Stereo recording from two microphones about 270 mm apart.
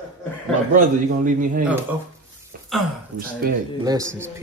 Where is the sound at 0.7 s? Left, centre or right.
Right.